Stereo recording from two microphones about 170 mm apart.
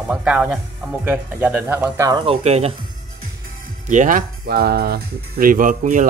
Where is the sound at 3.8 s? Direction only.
50° right (ahead or behind).